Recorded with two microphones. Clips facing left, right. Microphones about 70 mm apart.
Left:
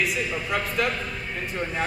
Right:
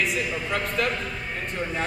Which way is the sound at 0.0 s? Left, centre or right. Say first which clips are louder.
Even; centre.